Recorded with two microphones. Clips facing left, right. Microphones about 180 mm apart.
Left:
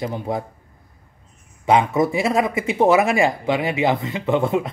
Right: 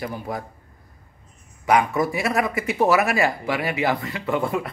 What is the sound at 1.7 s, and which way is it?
Speech, 25° left (ahead or behind).